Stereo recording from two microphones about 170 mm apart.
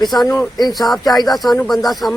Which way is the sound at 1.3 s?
Centre (ahead or behind).